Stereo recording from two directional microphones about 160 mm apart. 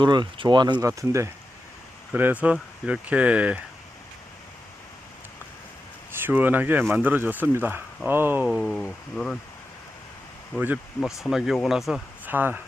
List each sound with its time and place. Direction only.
0.0 s speech: 30° right (ahead or behind); by 3.6 s 5° right (ahead or behind)
6.1 s speech: 15° right (ahead or behind)
8.4 s speech: centre (ahead or behind)
11.0 s speech: centre (ahead or behind)